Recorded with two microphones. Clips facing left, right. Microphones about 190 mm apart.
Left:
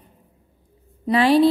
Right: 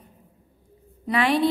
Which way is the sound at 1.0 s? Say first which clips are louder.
Left 6 dB; 30° left (ahead or behind).